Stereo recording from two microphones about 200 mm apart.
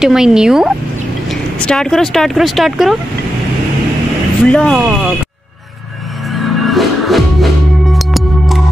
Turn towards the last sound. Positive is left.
turn(degrees=0)  # may be behind; listen again after turning